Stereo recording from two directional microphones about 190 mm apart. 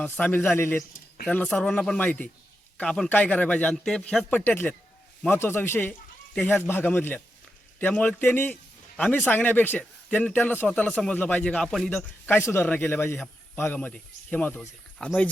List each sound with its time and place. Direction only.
0.0 s a man's voice: 10° left (ahead or behind)